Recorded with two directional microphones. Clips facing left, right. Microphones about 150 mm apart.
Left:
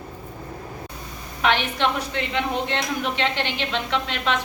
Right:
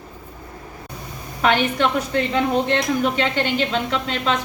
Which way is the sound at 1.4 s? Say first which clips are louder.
Right 3 dB; 40° right (ahead or behind).